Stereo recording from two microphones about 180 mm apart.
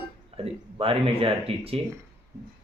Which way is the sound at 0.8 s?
30° right (ahead or behind).